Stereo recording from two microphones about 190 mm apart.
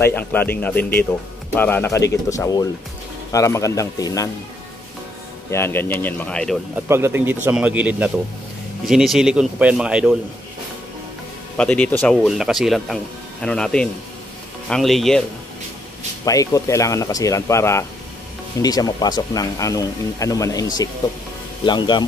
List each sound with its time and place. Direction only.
0.0 s speech: 10° left (ahead or behind)
5.5 s speech: 10° left (ahead or behind)
6.7 s a man's voice: 10° right (ahead or behind)
11.5 s speech: 5° left (ahead or behind)
16.3 s speech: 15° left (ahead or behind)
21.6 s speech: 25° left (ahead or behind)